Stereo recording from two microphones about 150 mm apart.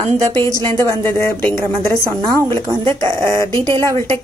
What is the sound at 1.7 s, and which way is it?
A woman's voice, 30° right (ahead or behind).